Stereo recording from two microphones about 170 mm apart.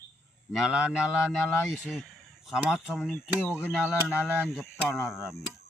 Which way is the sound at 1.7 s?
Centre (ahead or behind).